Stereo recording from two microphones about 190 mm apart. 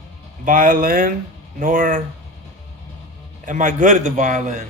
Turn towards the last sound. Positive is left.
turn(degrees=-45)  # may be behind; listen again after turning